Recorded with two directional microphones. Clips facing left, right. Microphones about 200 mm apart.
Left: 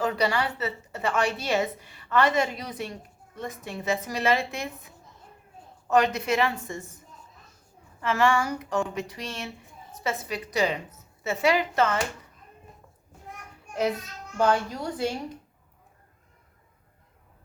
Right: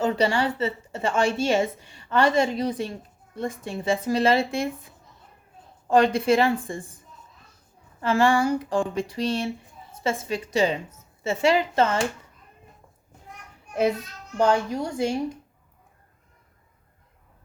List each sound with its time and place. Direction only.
0.0 s a woman's voice: 30° right (ahead or behind)
5.9 s a woman's voice: 30° right (ahead or behind)
8.0 s a woman's voice: 30° right (ahead or behind)
14.3 s a woman's voice: 20° right (ahead or behind)